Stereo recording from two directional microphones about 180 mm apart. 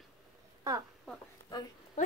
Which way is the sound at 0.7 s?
20° right (ahead or behind).